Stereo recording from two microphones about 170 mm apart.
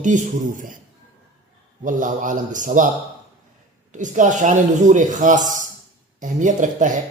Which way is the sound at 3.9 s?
45° right (ahead or behind).